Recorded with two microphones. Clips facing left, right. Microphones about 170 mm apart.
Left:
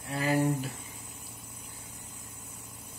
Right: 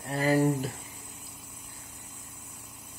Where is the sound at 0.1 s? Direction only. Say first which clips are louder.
Right 3 dB; 40° right (ahead or behind).